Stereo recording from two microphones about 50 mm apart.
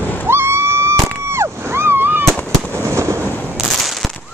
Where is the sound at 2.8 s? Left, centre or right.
Right.